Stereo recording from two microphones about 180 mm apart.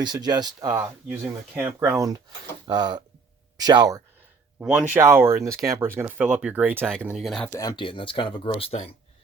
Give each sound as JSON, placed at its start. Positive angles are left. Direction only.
{"t": 0.0, "sound": "speech", "side_deg": -25}
{"t": 2.6, "sound": "speech", "side_deg": -25}
{"t": 4.6, "sound": "speech", "side_deg": -5}
{"t": 7.5, "sound": "speech", "side_deg": 20}